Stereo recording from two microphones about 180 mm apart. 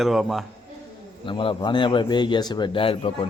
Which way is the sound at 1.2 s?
25° left (ahead or behind).